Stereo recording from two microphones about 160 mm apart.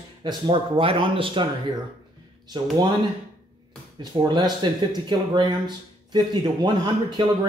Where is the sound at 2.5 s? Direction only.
25° right (ahead or behind).